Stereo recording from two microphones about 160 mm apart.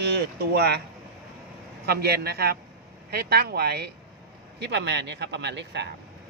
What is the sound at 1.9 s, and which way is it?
Speech, 80° right.